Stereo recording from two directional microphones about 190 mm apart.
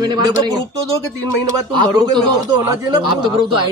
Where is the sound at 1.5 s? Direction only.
20° right (ahead or behind).